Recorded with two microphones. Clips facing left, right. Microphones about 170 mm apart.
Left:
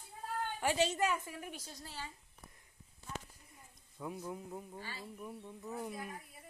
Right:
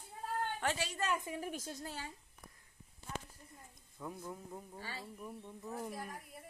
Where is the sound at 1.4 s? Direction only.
45° right (ahead or behind).